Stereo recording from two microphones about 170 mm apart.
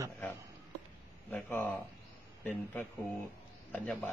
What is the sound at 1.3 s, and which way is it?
A man's voice, 10° left (ahead or behind).